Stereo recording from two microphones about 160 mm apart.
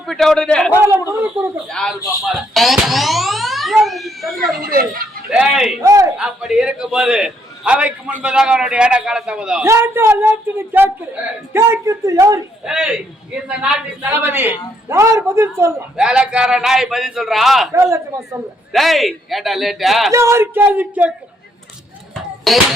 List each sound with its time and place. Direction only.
0.0 s a man's voice: centre (ahead or behind)
0.8 s speech: 15° right (ahead or behind)
1.6 s a man's voice: 5° left (ahead or behind)
4.7 s speech: 65° right (ahead or behind)
5.3 s a man's voice: 5° right (ahead or behind)
5.8 s speech: 20° right (ahead or behind)
6.1 s a man's voice: 5° right (ahead or behind)
9.6 s speech: 15° right (ahead or behind)
12.6 s a man's voice: 5° right (ahead or behind)
16.0 s a man's voice: 5° right (ahead or behind)
17.7 s speech: 20° right (ahead or behind)
18.7 s a man's voice: centre (ahead or behind)
20.1 s speech: 20° right (ahead or behind)
22.1 s a sound: centre (ahead or behind)